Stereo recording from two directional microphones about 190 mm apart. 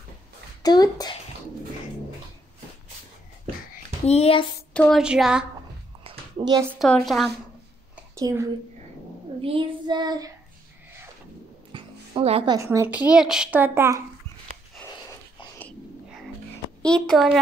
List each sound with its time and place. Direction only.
0.6 s speech: 20° left (ahead or behind)
4.0 s speech: 35° left (ahead or behind)
4.7 s speech: centre (ahead or behind)
6.0 s a sound: 25° right (ahead or behind)
6.9 s speech: centre (ahead or behind)
8.2 s a woman's voice: 15° right (ahead or behind)
9.4 s child singing: 25° right (ahead or behind)
11.7 s music: 30° right (ahead or behind)
12.5 s a woman's voice: 15° right (ahead or behind)
16.8 s speech: 5° left (ahead or behind)